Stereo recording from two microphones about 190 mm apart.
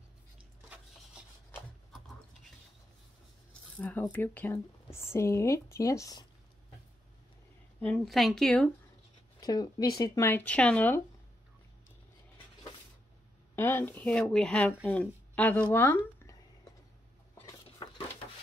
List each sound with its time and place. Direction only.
3.7 s speech: 5° left (ahead or behind)
7.8 s a woman's voice: 5° left (ahead or behind)
9.4 s speech: 20° left (ahead or behind)
13.6 s speech: 10° left (ahead or behind)
17.6 s a sound: 30° left (ahead or behind)